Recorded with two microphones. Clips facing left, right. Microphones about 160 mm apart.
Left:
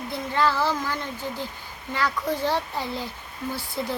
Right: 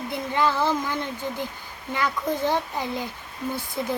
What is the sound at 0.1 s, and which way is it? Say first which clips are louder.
Speech: even; 20° right (ahead or behind).